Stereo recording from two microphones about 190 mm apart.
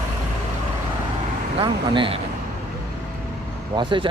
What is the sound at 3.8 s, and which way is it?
Speech, 25° right (ahead or behind).